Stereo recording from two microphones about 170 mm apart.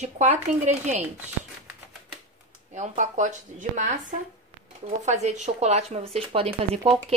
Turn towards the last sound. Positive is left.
turn(degrees=-35)  # may be behind; listen again after turning